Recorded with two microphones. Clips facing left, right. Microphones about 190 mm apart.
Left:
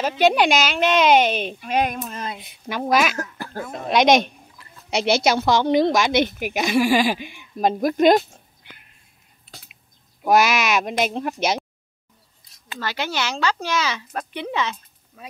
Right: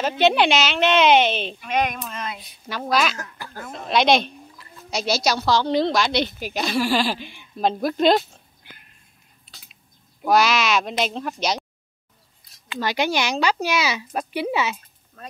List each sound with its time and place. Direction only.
0.0 s a woman's voice: 10° left (ahead or behind)
1.6 s female singing: 35° left (ahead or behind)
2.4 s a woman's voice: 15° left (ahead or behind)
4.9 s speech: 60° left (ahead or behind)
5.2 s a woman's voice: 20° left (ahead or behind)
10.2 s a woman's voice: 15° left (ahead or behind)
11.3 s speech: 55° left (ahead or behind)
12.7 s speech: 15° right (ahead or behind)
15.2 s speech: 5° left (ahead or behind)